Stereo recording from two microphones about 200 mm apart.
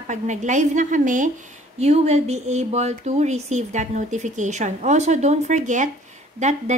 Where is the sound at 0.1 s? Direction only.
35° right (ahead or behind).